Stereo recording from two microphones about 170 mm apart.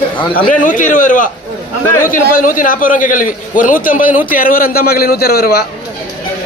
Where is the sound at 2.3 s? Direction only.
50° left (ahead or behind).